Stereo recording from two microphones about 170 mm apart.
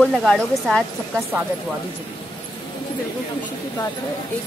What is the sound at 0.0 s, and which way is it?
Speech, centre (ahead or behind).